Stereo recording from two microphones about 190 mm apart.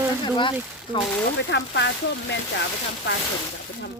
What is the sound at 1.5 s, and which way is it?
Speech, 65° left (ahead or behind).